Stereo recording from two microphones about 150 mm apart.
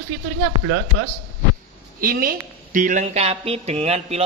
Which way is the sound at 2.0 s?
65° right (ahead or behind).